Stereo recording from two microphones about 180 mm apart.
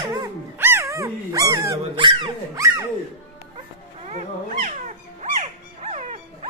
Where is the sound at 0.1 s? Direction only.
15° right (ahead or behind).